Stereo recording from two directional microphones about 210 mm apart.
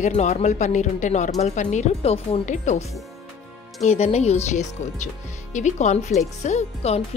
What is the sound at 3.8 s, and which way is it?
Speech, 30° left (ahead or behind).